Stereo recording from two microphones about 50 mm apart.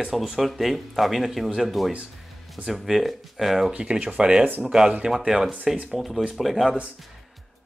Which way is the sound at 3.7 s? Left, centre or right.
Right.